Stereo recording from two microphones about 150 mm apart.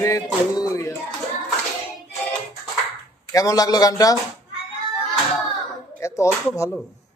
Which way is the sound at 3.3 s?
25° left (ahead or behind).